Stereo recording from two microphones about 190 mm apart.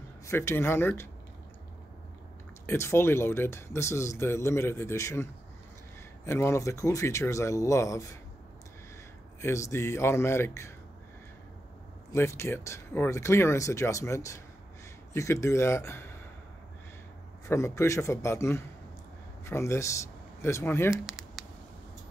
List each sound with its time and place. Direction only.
0.3 s speech: 15° left (ahead or behind)
2.6 s speech: 15° left (ahead or behind)
9.4 s speech: 15° left (ahead or behind)
12.1 s speech: 15° left (ahead or behind)
17.5 s speech: 15° left (ahead or behind)
20.9 s a sound: 5° right (ahead or behind)